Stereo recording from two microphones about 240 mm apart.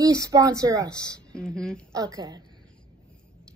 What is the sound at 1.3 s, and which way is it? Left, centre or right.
Speech, centre.